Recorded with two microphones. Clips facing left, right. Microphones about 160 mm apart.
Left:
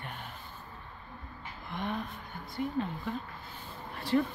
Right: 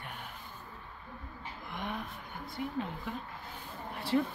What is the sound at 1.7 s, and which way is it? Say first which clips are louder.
Speech: left 4 dB; 15° right (ahead or behind).